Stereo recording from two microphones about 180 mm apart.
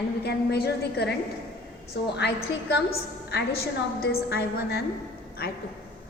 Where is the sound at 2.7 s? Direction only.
65° left (ahead or behind).